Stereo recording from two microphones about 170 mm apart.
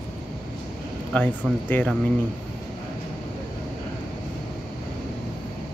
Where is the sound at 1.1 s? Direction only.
10° left (ahead or behind).